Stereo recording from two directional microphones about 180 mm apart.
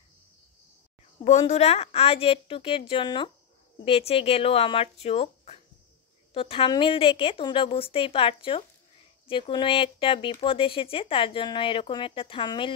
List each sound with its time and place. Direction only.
1.5 s speech: 35° left (ahead or behind)